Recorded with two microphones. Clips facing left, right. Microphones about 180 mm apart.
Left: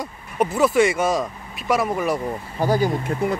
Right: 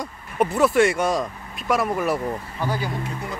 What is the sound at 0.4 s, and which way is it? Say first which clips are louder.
Speech: even; centre (ahead or behind).